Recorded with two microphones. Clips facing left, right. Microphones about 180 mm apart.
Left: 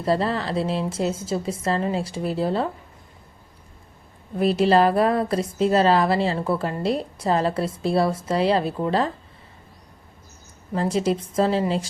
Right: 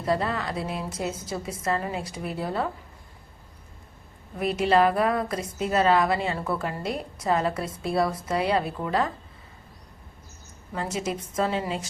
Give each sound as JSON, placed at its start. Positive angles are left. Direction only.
{"t": 0.0, "sound": "a woman's voice", "side_deg": 30}
{"t": 4.4, "sound": "a woman's voice", "side_deg": 30}
{"t": 10.8, "sound": "a woman's voice", "side_deg": 30}